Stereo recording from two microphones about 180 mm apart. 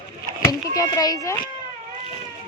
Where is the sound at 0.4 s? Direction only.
20° left (ahead or behind).